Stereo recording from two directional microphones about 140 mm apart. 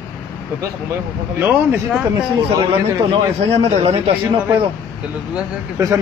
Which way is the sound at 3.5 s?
50° right (ahead or behind).